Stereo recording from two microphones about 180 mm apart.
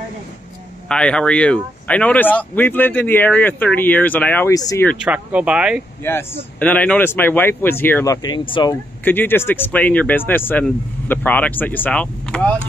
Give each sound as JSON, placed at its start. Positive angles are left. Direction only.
{"t": 0.8, "sound": "speech", "side_deg": 5}
{"t": 5.0, "sound": "speech", "side_deg": -5}
{"t": 6.0, "sound": "speech", "side_deg": 10}
{"t": 9.0, "sound": "speech", "side_deg": 10}